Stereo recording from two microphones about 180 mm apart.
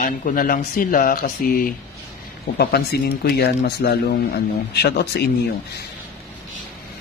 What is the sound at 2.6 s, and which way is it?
A man's voice, 65° left (ahead or behind).